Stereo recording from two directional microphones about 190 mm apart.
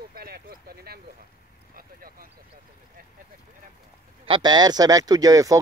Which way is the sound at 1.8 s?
50° right (ahead or behind).